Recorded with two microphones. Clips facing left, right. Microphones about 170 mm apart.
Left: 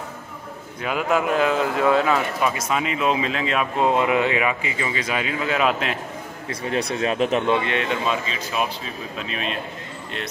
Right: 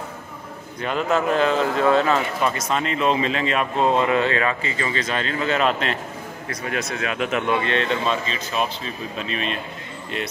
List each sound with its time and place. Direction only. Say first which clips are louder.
0.8 s speech: even; 10° left (ahead or behind)
3.9 s speech: even; 15° left (ahead or behind)
6.5 s speech: left 3 dB; 30° left (ahead or behind); by 9.6 s 5° left (ahead or behind)